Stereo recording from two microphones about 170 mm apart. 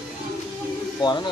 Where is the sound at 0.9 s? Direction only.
25° left (ahead or behind).